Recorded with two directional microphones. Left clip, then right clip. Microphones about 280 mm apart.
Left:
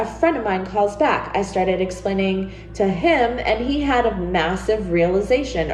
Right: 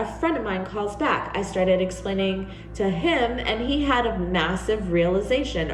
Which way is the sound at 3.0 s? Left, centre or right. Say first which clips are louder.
Left 6 dB; centre.